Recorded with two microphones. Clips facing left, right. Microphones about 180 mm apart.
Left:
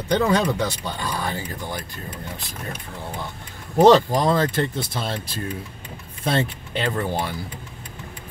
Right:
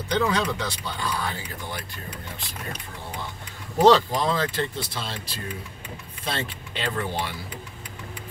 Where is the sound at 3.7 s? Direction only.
45° left (ahead or behind).